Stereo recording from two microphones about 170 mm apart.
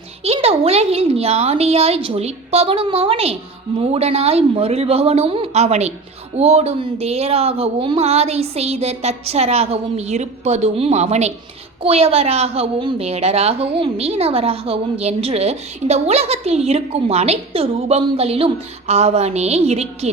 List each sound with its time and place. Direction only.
0.3 s a woman's voice: 35° right (ahead or behind)